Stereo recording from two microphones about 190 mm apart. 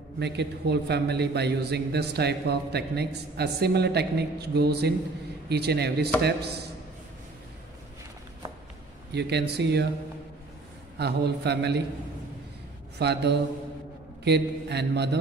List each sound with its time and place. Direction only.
0.2 s a man's voice: 60° right (ahead or behind)
9.1 s a man's voice: 60° right (ahead or behind)
11.0 s a man's voice: 60° right (ahead or behind)
13.0 s a man's voice: 60° right (ahead or behind)